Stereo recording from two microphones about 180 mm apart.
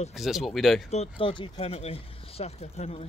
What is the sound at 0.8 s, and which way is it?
Speech, 35° left (ahead or behind).